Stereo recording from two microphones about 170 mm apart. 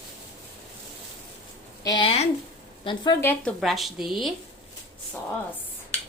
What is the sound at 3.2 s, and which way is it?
A woman's voice, 10° left (ahead or behind).